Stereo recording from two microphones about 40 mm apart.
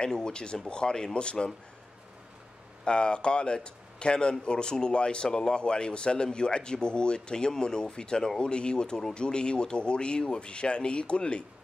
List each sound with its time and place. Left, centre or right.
0.0 s speech: left
2.8 s speech: left